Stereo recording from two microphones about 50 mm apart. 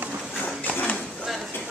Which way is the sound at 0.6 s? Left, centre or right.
Left.